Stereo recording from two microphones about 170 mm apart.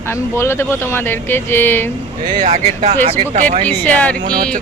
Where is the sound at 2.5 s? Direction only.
40° right (ahead or behind).